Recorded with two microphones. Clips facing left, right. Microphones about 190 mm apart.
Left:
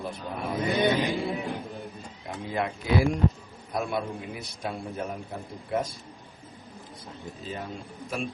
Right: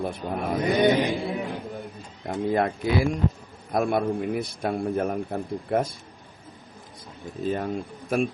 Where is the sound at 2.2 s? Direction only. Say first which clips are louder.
Right 7 dB; 50° right (ahead or behind).